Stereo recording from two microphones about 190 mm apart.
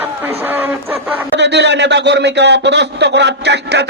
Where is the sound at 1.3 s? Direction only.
65° right (ahead or behind).